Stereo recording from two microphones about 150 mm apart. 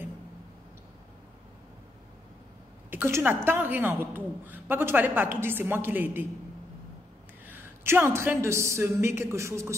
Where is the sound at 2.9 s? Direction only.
15° right (ahead or behind).